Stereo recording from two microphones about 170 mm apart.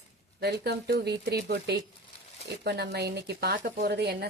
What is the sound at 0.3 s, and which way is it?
A woman's voice, 75° right (ahead or behind).